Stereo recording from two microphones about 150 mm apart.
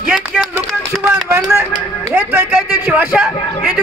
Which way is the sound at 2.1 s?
10° right (ahead or behind).